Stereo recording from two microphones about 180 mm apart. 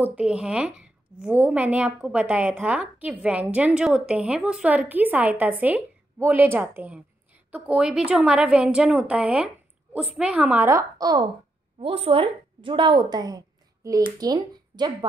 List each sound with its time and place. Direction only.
0.1 s a woman's voice: 5° right (ahead or behind); by 15.0 s 25° right (ahead or behind)